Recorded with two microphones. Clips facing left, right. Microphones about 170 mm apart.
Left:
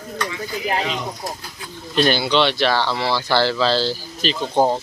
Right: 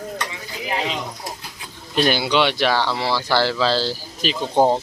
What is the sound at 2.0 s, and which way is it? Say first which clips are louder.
Speech: even; 10° right (ahead or behind).